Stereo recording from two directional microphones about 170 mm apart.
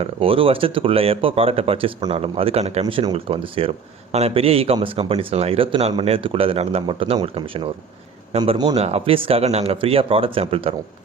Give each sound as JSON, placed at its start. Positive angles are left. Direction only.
{"t": 0.0, "sound": "speech", "side_deg": -30}
{"t": 2.8, "sound": "a man's voice", "side_deg": -25}
{"t": 8.7, "sound": "speech", "side_deg": -35}